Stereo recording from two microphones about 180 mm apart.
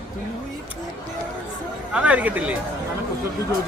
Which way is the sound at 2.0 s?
10° right (ahead or behind).